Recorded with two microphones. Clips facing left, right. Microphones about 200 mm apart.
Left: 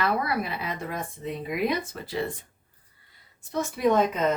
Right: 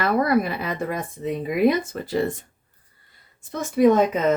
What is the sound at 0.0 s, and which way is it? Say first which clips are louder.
Speech: right 7 dB; 45° right (ahead or behind).